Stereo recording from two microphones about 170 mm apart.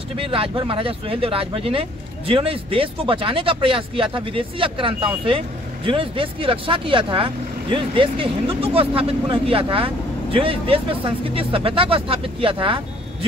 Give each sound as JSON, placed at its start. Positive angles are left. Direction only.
{"t": 0.2, "sound": "speech", "side_deg": -30}